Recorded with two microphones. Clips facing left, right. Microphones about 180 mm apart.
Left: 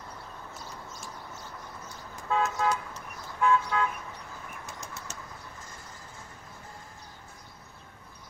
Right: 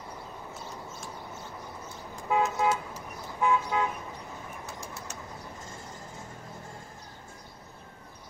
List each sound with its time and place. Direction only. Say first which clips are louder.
2.2 s car: right 2 dB; 15° right (ahead or behind)
2.9 s vehicle: right 2 dB; 15° right (ahead or behind)